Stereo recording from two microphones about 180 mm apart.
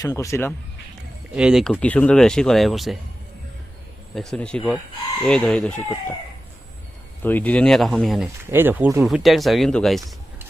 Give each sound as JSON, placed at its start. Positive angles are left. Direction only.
{"t": 0.0, "sound": "speech", "side_deg": 20}
{"t": 1.4, "sound": "speech", "side_deg": -5}
{"t": 4.1, "sound": "speech", "side_deg": 5}
{"t": 7.2, "sound": "speech", "side_deg": 10}
{"t": 8.4, "sound": "speech", "side_deg": -10}